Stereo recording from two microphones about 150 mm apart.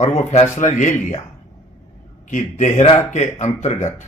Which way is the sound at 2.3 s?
55° left (ahead or behind).